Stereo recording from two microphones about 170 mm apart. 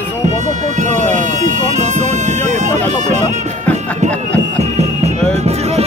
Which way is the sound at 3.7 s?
40° right (ahead or behind).